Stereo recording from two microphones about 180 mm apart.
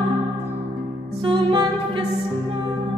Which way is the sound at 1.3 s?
25° right (ahead or behind).